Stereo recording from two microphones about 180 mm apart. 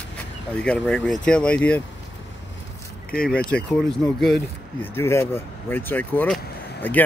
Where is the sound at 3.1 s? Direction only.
5° left (ahead or behind).